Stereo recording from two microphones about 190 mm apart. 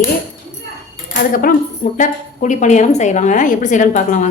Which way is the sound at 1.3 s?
45° left (ahead or behind).